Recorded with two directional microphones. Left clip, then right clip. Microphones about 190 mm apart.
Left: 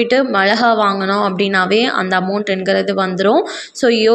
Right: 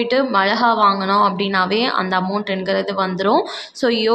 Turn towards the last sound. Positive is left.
turn(degrees=10)  # may be behind; listen again after turning